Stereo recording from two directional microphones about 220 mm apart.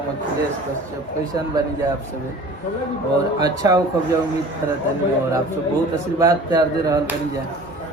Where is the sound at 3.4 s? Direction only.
15° right (ahead or behind).